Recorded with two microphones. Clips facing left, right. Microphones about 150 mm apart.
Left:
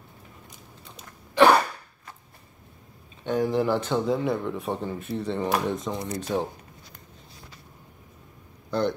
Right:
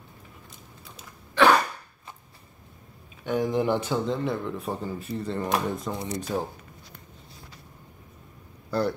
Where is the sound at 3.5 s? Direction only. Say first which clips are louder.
Left 1 dB; 15° right (ahead or behind).